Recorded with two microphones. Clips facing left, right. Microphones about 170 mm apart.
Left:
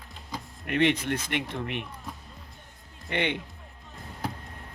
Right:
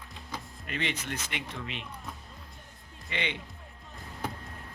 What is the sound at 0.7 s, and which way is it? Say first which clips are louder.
Speech: left 10 dB; 60° left (ahead or behind).